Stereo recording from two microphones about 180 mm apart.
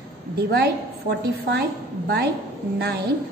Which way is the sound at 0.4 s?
60° right (ahead or behind).